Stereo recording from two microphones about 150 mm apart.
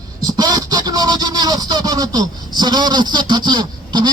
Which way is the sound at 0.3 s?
25° right (ahead or behind).